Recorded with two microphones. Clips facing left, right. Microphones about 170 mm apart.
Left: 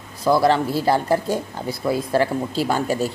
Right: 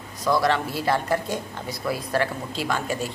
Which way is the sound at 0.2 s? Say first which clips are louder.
Left 5 dB; 30° left (ahead or behind).